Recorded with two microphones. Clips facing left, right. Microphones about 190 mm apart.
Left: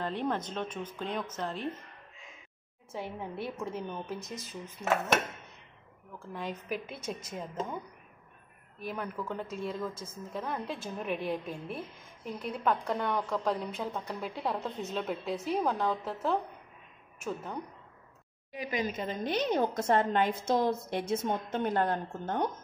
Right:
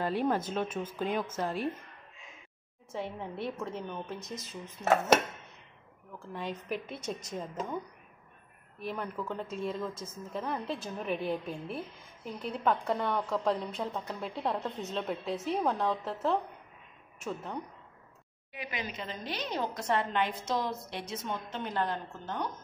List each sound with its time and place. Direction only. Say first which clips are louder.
0.0 s speech: right 3 dB; 5° right (ahead or behind)
2.9 s a woman's voice: right 1 dB; 5° left (ahead or behind)
6.3 s a woman's voice: even; centre (ahead or behind)
8.7 s a woman's voice: even; centre (ahead or behind)
18.5 s a woman's voice: left 6 dB; 40° left (ahead or behind)